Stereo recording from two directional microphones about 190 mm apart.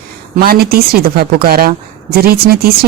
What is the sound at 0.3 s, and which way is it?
Speech, 55° right (ahead or behind).